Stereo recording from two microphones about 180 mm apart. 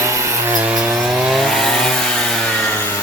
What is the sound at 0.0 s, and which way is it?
Wood, 15° right (ahead or behind).